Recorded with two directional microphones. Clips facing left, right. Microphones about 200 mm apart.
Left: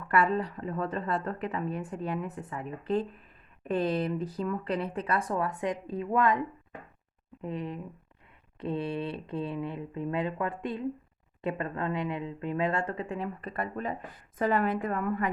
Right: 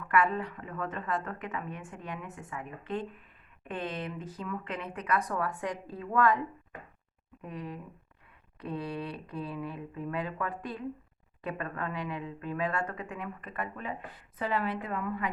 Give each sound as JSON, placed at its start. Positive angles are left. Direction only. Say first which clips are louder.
{"t": 0.1, "sound": "a woman's voice", "louder": "left 2 dB", "side_deg": 35}
{"t": 7.4, "sound": "speech", "louder": "left 5 dB", "side_deg": 25}
{"t": 14.3, "sound": "a woman's voice", "louder": "left 5 dB", "side_deg": 50}